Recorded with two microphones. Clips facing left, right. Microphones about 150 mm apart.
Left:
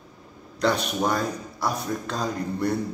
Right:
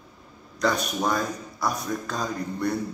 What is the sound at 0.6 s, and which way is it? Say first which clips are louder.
A man's voice: left 1 dB; 30° left (ahead or behind).